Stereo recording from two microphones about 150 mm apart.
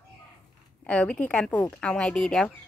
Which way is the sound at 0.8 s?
10° left (ahead or behind).